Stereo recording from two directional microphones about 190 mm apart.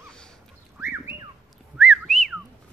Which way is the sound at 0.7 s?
10° right (ahead or behind).